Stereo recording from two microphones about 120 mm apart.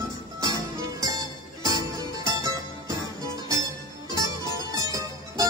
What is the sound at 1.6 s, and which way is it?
Music, 30° right (ahead or behind).